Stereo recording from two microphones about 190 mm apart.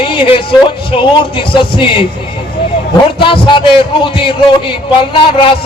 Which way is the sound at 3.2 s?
25° left (ahead or behind).